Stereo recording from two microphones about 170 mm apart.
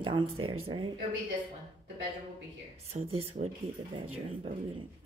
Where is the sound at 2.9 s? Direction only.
40° right (ahead or behind).